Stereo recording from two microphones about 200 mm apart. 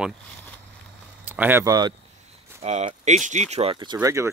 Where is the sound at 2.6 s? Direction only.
35° right (ahead or behind); by 4.3 s 15° right (ahead or behind).